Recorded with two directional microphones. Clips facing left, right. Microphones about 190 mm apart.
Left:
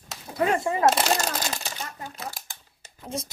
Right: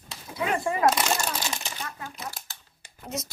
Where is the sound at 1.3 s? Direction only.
35° left (ahead or behind).